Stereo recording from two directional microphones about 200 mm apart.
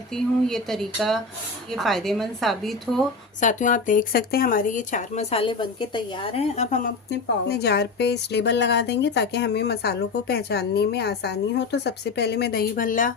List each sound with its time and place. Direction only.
0.1 s a woman's voice: centre (ahead or behind)
3.4 s speech: 40° left (ahead or behind)
7.1 s a woman's voice: 55° left (ahead or behind)